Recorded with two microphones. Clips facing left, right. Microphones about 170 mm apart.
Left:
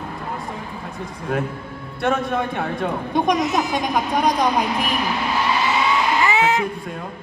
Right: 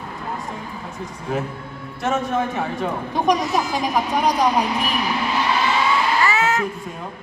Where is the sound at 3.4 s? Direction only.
20° left (ahead or behind).